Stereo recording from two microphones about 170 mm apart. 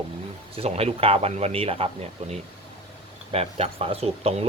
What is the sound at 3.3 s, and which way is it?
Speech, 35° right (ahead or behind).